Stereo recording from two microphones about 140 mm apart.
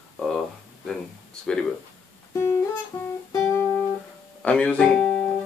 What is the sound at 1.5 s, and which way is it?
Speech, 5° left (ahead or behind).